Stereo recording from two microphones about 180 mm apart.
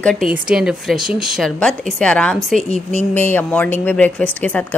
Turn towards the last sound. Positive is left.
turn(degrees=10)  # may be behind; listen again after turning